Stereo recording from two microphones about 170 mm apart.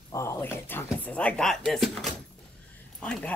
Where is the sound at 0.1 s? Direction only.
15° left (ahead or behind).